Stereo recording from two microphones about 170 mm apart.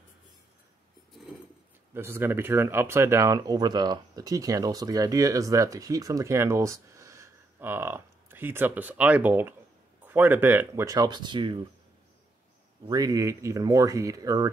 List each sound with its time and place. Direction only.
2.0 s speech: 15° right (ahead or behind)
12.8 s speech: 20° right (ahead or behind)